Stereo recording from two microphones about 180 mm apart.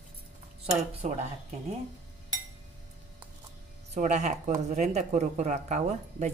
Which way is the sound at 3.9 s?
40° right (ahead or behind).